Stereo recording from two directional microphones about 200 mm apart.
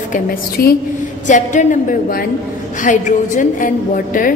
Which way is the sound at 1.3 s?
40° left (ahead or behind).